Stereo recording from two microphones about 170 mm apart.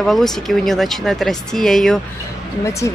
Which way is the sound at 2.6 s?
15° left (ahead or behind).